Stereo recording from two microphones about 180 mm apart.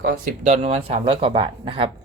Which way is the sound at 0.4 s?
40° right (ahead or behind).